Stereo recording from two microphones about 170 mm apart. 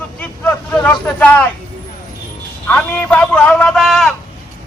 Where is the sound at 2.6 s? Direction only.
10° left (ahead or behind).